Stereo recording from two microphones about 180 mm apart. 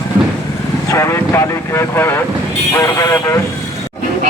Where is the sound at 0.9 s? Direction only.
15° left (ahead or behind).